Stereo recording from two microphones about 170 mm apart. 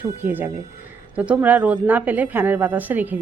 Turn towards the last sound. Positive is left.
turn(degrees=-10)  # may be behind; listen again after turning